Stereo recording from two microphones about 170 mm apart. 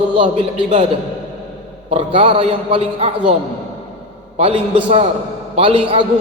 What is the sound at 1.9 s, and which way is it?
A man's voice, 35° right (ahead or behind).